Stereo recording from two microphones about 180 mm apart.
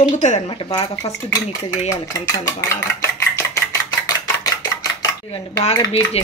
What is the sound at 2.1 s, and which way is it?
Speech, 20° left (ahead or behind).